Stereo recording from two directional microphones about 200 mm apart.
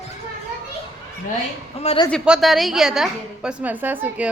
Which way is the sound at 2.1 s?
Centre (ahead or behind).